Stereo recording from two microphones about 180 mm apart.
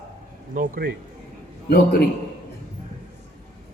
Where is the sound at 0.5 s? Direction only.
50° right (ahead or behind).